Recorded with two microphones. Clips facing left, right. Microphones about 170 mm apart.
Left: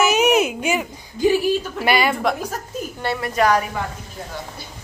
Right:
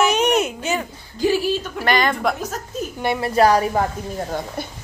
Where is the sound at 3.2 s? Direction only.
30° right (ahead or behind).